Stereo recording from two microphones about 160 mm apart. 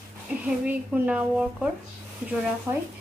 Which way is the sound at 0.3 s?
10° right (ahead or behind).